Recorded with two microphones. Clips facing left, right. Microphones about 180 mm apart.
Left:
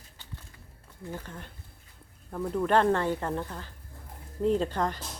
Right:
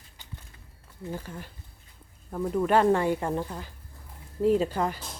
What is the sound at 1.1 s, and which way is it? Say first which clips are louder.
Speech: right 2 dB; 10° right (ahead or behind).